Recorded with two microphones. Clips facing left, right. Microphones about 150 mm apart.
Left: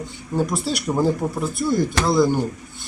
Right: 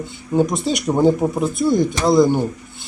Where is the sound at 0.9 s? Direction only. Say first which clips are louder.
Right 5 dB; 20° right (ahead or behind).